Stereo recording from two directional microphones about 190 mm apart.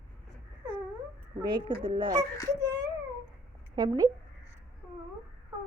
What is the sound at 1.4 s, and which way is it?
Speech, 25° right (ahead or behind).